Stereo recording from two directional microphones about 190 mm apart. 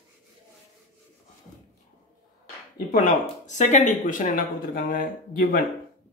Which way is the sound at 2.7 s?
40° left (ahead or behind).